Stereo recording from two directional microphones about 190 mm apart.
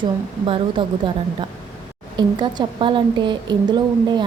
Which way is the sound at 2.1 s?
25° right (ahead or behind).